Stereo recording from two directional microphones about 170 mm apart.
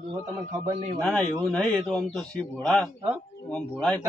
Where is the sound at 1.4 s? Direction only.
5° left (ahead or behind).